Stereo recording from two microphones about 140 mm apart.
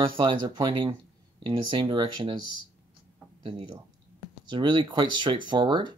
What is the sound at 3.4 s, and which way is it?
Speech, 45° right (ahead or behind).